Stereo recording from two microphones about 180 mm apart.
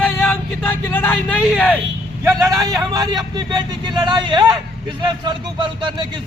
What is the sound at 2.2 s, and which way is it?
A man's voice, 20° right (ahead or behind).